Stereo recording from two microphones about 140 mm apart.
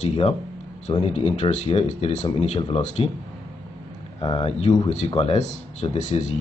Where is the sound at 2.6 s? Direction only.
40° left (ahead or behind).